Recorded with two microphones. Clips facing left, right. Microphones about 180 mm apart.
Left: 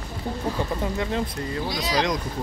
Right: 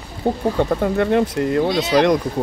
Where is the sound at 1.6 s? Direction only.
25° right (ahead or behind).